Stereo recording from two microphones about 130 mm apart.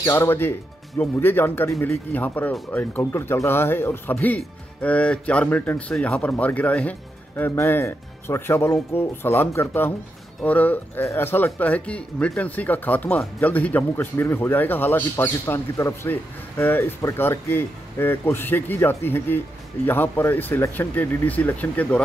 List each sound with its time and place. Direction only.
0.0 s speech: 20° left (ahead or behind)